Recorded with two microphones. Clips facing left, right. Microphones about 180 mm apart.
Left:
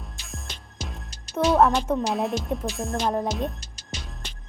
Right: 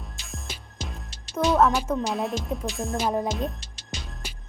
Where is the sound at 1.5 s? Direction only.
10° left (ahead or behind).